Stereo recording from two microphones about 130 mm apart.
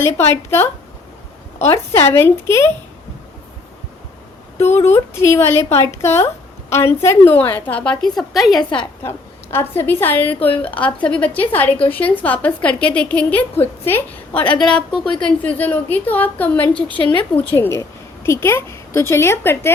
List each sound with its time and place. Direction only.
0.0 s a woman's voice: 20° left (ahead or behind)
4.9 s a woman's voice: 20° left (ahead or behind); by 8.6 s centre (ahead or behind)
9.0 s a woman's voice: 20° left (ahead or behind)
14.6 s a woman's voice: 5° left (ahead or behind)
17.1 s a woman's voice: 40° left (ahead or behind)
17.5 s a woman's voice: 20° left (ahead or behind)